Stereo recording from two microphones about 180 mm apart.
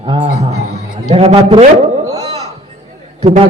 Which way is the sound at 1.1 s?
35° right (ahead or behind).